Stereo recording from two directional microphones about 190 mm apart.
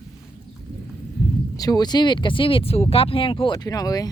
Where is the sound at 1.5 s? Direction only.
20° left (ahead or behind).